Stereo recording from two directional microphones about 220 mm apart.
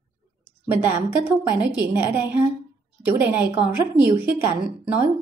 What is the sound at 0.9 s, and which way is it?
A woman's voice, 10° right (ahead or behind).